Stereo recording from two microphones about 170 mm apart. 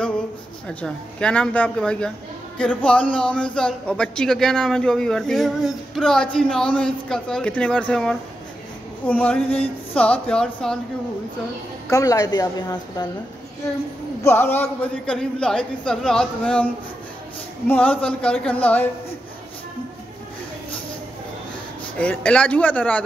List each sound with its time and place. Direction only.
0.7 s a man's voice: 5° left (ahead or behind)
11.9 s a woman's voice: 20° left (ahead or behind)
14.2 s a man's voice: 15° left (ahead or behind)
17.6 s a man's voice: 10° left (ahead or behind)
21.9 s a man's voice: 5° left (ahead or behind)